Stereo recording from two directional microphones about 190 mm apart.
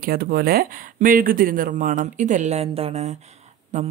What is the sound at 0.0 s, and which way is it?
Speech, 50° right (ahead or behind).